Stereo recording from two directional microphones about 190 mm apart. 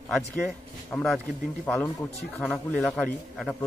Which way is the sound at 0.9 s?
5° left (ahead or behind).